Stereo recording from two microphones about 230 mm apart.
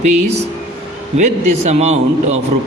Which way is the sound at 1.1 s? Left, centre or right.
Right.